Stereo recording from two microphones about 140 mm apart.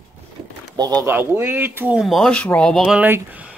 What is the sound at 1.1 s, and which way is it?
Speech, 15° right (ahead or behind).